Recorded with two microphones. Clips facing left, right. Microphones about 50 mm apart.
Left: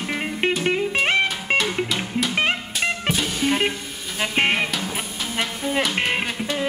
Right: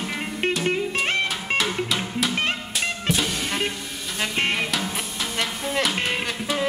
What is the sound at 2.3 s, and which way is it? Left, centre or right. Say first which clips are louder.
Music: left 6 dB; left.